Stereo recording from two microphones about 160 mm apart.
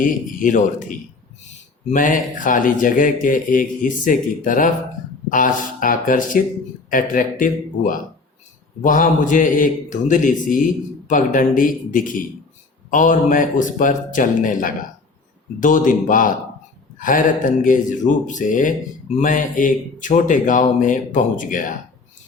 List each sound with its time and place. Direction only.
0.0 s speech: 55° left (ahead or behind)